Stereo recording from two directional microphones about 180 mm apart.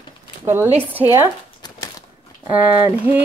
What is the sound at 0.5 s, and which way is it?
Speech, 10° right (ahead or behind).